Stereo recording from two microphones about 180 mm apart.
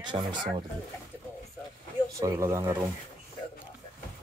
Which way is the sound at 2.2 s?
15° right (ahead or behind).